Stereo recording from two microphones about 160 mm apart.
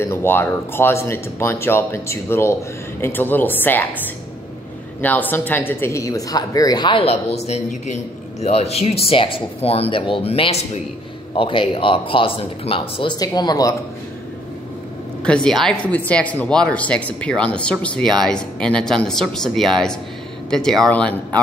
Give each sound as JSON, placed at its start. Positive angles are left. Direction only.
{"t": 0.0, "sound": "speech", "side_deg": 15}
{"t": 5.0, "sound": "speech", "side_deg": 10}
{"t": 15.2, "sound": "speech", "side_deg": 5}